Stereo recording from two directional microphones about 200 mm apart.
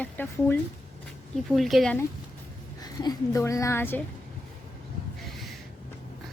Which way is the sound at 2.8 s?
20° left (ahead or behind).